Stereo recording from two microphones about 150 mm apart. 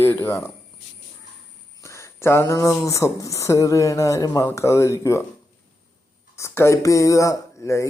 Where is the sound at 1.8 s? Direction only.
20° left (ahead or behind).